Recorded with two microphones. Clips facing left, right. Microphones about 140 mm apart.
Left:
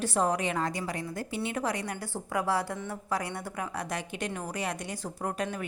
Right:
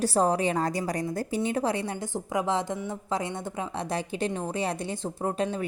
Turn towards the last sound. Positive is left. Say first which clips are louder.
# right 4 dB
turn(degrees=-25)  # may be behind; listen again after turning